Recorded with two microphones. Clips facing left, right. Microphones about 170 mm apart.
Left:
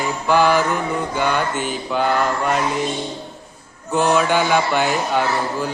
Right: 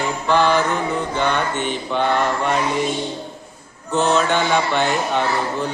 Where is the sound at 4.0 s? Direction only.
10° left (ahead or behind).